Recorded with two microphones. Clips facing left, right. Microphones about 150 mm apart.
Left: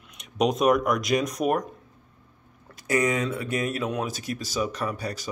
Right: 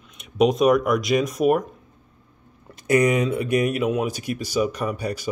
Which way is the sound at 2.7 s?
20° right (ahead or behind).